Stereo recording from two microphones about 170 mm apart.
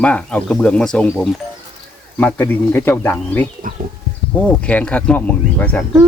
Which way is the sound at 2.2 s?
10° left (ahead or behind).